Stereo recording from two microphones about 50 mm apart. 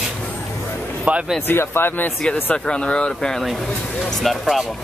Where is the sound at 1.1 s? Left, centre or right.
Right.